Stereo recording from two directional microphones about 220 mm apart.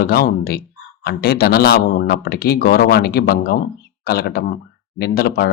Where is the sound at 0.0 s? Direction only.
45° left (ahead or behind).